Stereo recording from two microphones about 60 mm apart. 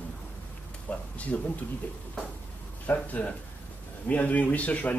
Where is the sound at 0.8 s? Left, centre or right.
Left.